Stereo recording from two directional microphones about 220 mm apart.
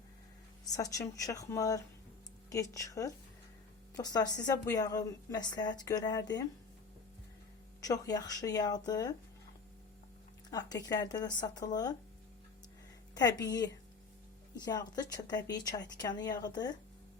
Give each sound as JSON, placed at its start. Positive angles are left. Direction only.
{"t": 0.7, "sound": "a woman's voice", "side_deg": 15}
{"t": 7.8, "sound": "a woman's voice", "side_deg": 15}
{"t": 10.5, "sound": "a woman's voice", "side_deg": 15}
{"t": 13.1, "sound": "a woman's voice", "side_deg": 15}